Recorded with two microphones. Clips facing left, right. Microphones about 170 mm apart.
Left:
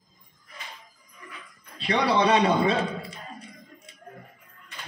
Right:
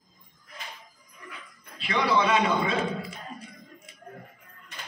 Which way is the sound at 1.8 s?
35° left (ahead or behind).